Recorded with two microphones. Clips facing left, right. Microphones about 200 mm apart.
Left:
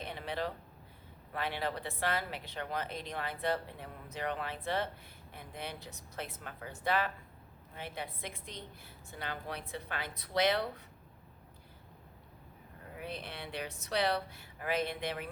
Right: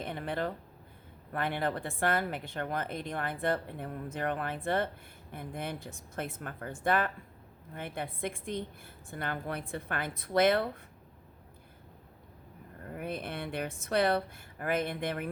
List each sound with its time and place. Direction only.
0.0 s a sound: 50° right (ahead or behind)
1.3 s a woman's voice: 50° right (ahead or behind)
12.9 s a woman's voice: 50° right (ahead or behind)